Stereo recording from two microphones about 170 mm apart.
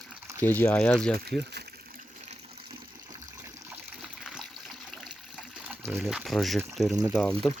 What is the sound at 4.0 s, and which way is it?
Water, 5° right (ahead or behind).